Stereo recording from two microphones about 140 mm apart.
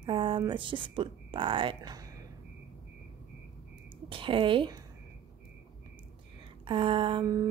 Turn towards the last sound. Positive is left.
turn(degrees=-25)  # may be behind; listen again after turning